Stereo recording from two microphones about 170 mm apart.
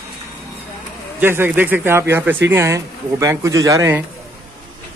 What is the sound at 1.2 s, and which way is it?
A man's voice, 15° right (ahead or behind).